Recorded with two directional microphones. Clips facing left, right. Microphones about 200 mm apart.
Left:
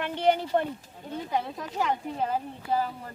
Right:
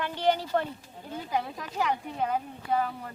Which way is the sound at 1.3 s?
Centre (ahead or behind).